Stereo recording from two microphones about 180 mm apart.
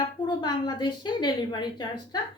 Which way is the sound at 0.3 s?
25° left (ahead or behind).